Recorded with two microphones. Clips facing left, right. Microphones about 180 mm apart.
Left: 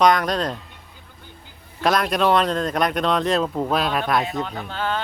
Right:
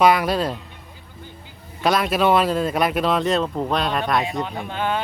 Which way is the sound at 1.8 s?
Centre (ahead or behind).